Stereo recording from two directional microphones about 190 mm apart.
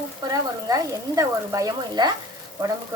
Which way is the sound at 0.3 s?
20° right (ahead or behind).